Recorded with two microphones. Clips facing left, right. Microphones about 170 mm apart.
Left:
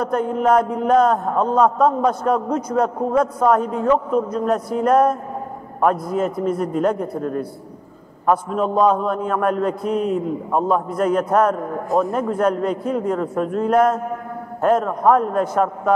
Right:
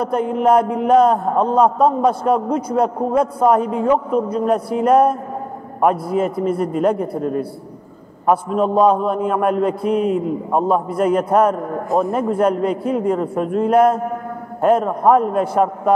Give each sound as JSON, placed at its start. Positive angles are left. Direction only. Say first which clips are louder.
{"t": 0.0, "sound": "a man's voice", "louder": "right 2 dB", "side_deg": -10}
{"t": 8.3, "sound": "a man's voice", "louder": "right 2 dB", "side_deg": -10}